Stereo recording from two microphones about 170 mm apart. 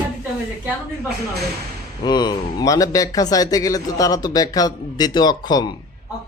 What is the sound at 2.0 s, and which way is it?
A man's voice, 25° left (ahead or behind).